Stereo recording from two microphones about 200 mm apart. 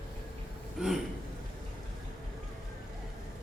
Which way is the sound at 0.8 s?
5° right (ahead or behind).